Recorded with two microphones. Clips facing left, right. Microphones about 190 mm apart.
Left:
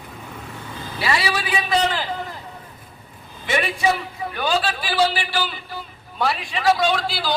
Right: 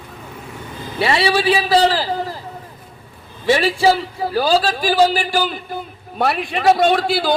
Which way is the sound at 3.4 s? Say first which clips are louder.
Right 7 dB; 30° right (ahead or behind).